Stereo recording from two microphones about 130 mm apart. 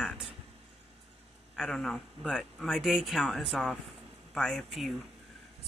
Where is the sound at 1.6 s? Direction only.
5° left (ahead or behind).